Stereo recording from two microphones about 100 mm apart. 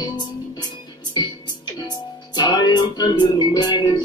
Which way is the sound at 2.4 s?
50° left (ahead or behind).